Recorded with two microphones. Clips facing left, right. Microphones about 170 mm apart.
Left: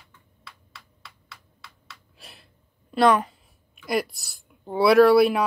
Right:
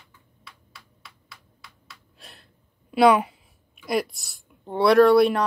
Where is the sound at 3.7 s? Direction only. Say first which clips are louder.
Even; centre (ahead or behind).